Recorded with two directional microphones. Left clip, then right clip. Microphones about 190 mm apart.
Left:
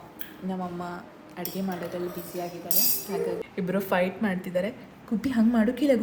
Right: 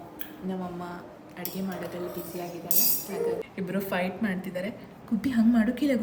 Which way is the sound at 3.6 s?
20° left (ahead or behind).